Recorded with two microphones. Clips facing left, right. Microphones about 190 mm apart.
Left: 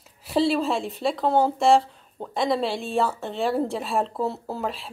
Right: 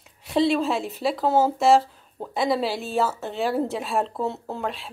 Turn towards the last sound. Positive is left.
turn(degrees=0)  # may be behind; listen again after turning